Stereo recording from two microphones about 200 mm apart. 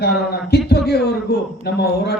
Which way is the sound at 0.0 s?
55° left (ahead or behind).